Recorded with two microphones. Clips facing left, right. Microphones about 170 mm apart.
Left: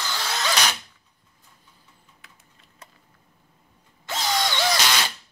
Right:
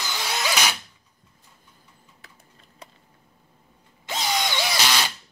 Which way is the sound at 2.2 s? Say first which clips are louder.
Right 3 dB; 35° right (ahead or behind).